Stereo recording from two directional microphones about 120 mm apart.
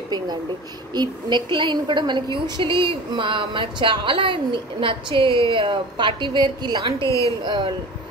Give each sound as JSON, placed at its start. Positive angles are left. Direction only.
{"t": 0.9, "sound": "a woman's voice", "side_deg": -40}
{"t": 7.0, "sound": "a woman's voice", "side_deg": 25}
{"t": 7.4, "sound": "speech", "side_deg": -40}